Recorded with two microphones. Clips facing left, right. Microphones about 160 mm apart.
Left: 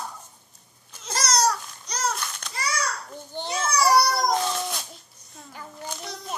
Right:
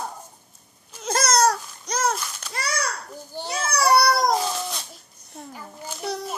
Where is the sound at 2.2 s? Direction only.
5° right (ahead or behind).